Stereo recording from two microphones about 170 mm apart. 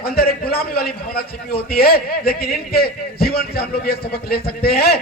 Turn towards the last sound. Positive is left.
turn(degrees=65)  # may be behind; listen again after turning